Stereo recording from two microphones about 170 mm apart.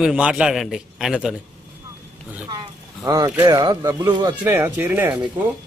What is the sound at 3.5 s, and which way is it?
Speech, 20° right (ahead or behind).